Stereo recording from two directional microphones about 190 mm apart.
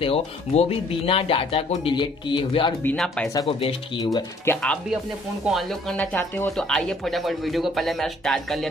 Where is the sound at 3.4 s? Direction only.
25° left (ahead or behind).